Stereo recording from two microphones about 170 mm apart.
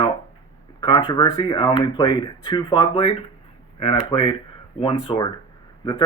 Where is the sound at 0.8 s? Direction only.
25° left (ahead or behind).